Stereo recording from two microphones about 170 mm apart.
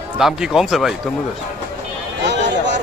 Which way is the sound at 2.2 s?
90° right.